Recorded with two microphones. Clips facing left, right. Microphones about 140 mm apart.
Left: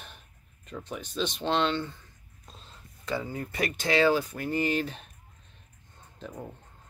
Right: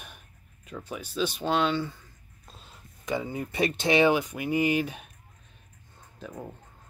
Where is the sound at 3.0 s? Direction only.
15° right (ahead or behind).